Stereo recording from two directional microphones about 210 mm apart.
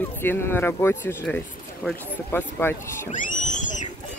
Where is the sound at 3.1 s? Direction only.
35° left (ahead or behind).